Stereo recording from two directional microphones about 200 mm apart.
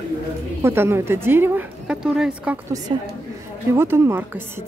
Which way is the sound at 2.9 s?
25° right (ahead or behind).